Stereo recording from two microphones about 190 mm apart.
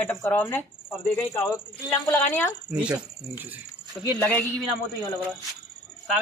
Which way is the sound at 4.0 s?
5° left (ahead or behind).